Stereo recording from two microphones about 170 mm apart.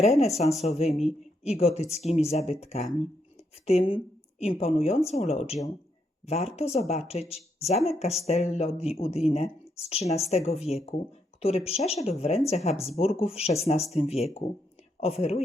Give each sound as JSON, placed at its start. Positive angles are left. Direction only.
{"t": 0.0, "sound": "speech", "side_deg": 40}